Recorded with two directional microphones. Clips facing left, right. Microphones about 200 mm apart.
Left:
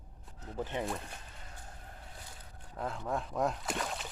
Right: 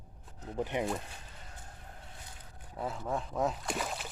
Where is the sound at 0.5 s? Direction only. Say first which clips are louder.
Right 3 dB; 15° right (ahead or behind).